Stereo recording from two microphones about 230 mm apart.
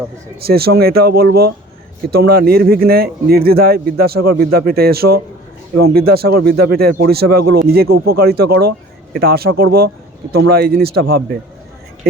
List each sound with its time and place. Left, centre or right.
0.4 s speech: right
7.3 s speech: right
7.7 s speech: right